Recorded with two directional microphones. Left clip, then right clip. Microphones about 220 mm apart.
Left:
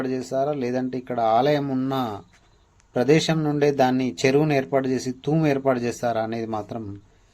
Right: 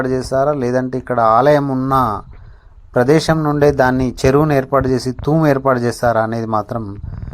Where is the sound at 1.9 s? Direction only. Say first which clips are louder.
Right 12 dB; 25° right (ahead or behind).